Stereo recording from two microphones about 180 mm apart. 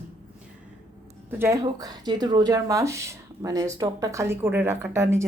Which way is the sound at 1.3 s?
15° right (ahead or behind).